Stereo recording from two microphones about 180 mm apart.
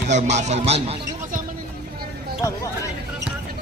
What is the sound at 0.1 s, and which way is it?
Speech, 40° right (ahead or behind).